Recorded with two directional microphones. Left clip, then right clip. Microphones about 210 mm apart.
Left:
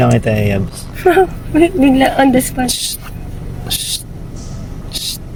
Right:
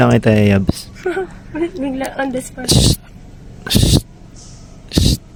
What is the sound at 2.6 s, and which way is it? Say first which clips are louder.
Speech: right 4 dB; 50° right (ahead or behind).